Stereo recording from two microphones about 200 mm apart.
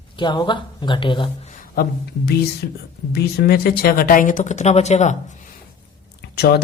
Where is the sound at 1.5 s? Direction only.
45° left (ahead or behind).